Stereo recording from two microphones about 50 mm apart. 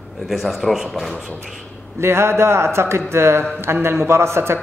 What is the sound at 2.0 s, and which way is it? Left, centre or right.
Speech, right.